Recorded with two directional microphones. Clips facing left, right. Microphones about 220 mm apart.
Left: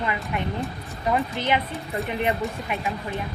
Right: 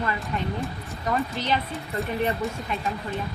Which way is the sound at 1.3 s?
15° left (ahead or behind).